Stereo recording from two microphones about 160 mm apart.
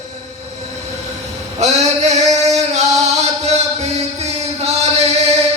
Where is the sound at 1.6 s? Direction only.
45° right (ahead or behind).